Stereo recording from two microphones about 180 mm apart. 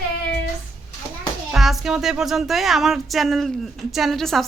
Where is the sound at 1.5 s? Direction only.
Centre (ahead or behind).